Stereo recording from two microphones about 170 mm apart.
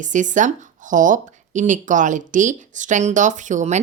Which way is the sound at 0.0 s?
45° right (ahead or behind).